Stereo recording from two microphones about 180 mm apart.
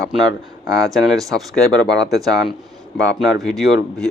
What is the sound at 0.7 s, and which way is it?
Speech, 20° right (ahead or behind).